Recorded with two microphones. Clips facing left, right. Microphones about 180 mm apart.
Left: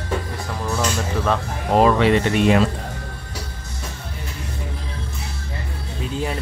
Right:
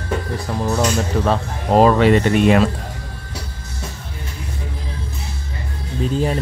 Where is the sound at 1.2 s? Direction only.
35° right (ahead or behind).